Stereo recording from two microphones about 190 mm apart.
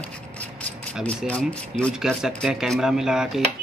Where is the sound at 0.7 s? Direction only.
5° left (ahead or behind).